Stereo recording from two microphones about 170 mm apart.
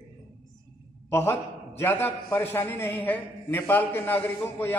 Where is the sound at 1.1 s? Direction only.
15° left (ahead or behind).